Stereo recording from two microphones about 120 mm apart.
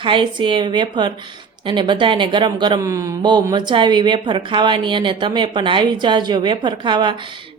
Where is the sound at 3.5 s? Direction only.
40° right (ahead or behind).